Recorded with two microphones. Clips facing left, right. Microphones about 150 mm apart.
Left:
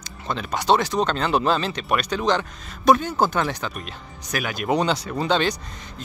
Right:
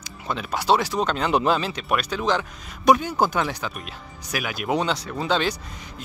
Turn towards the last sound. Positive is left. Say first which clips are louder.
# left 1 dB
turn(degrees=-5)  # may be behind; listen again after turning